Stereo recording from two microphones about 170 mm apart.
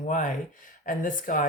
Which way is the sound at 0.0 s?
50° left (ahead or behind).